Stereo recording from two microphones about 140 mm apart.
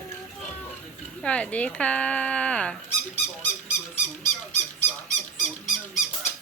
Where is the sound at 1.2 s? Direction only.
10° left (ahead or behind).